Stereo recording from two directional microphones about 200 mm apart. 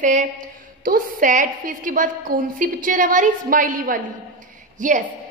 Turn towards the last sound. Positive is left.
turn(degrees=-40)  # may be behind; listen again after turning